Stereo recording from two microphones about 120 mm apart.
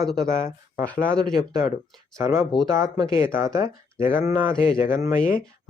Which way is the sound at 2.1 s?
25° right (ahead or behind).